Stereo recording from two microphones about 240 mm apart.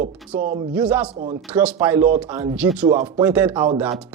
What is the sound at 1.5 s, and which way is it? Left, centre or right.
Speech, centre.